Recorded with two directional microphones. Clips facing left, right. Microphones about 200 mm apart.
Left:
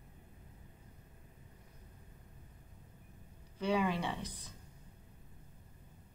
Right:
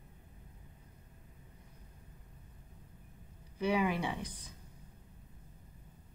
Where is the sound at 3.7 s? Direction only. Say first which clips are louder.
Right 1 dB; 15° right (ahead or behind).